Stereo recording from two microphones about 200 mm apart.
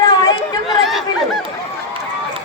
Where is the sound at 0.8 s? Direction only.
Centre (ahead or behind).